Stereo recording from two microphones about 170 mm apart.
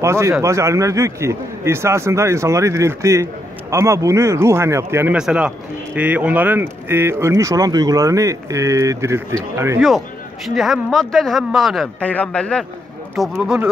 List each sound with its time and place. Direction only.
0.0 s speech: 15° right (ahead or behind)
9.8 s speech: centre (ahead or behind)